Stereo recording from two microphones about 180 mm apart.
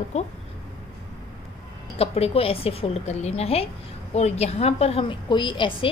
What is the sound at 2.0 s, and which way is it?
A woman's voice, 35° left (ahead or behind).